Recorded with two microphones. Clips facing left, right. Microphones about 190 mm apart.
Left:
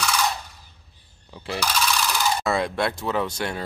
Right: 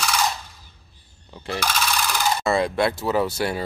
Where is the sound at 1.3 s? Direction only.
5° left (ahead or behind).